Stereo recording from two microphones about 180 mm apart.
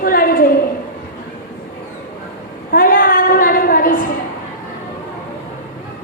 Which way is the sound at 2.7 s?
50° left (ahead or behind).